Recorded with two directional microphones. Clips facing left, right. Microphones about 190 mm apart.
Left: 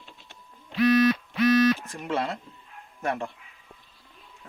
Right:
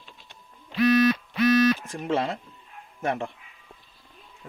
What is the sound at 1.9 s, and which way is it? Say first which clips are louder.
Speech: right 3 dB; 25° right (ahead or behind).